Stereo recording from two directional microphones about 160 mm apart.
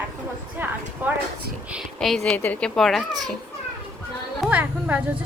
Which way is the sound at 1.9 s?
5° left (ahead or behind).